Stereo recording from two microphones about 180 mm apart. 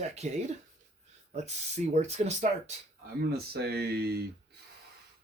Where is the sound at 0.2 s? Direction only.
40° right (ahead or behind).